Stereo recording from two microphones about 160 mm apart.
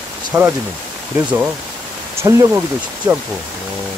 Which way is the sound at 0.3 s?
15° right (ahead or behind).